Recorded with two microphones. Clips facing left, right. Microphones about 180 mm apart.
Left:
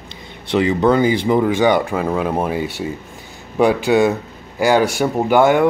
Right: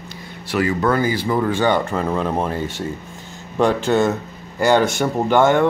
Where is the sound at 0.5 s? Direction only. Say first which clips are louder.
Left 4 dB; 25° left (ahead or behind).